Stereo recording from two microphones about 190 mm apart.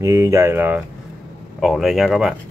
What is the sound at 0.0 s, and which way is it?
Speech, 15° right (ahead or behind).